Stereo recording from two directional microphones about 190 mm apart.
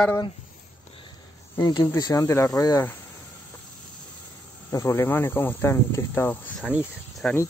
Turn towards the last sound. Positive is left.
turn(degrees=-5)  # may be behind; listen again after turning